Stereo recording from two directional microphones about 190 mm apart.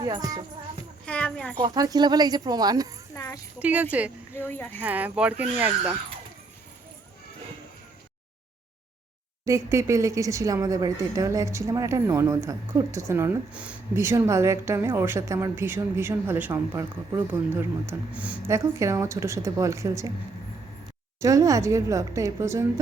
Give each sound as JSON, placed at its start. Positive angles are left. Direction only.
{"t": 0.0, "sound": "speech", "side_deg": -20}
{"t": 1.0, "sound": "speech", "side_deg": 5}
{"t": 1.6, "sound": "speech", "side_deg": -20}
{"t": 3.2, "sound": "a sound", "side_deg": 15}
{"t": 3.6, "sound": "a woman's voice", "side_deg": -10}
{"t": 4.4, "sound": "speech", "side_deg": 10}
{"t": 4.8, "sound": "a woman's voice", "side_deg": -10}
{"t": 9.4, "sound": "a woman's voice", "side_deg": -15}
{"t": 21.2, "sound": "a woman's voice", "side_deg": -15}